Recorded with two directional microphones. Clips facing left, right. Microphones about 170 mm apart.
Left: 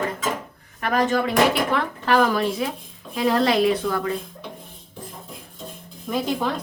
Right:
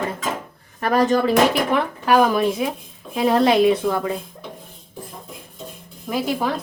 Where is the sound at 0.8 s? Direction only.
35° right (ahead or behind).